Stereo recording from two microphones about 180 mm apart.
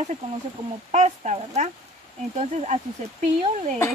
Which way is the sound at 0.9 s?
40° right (ahead or behind).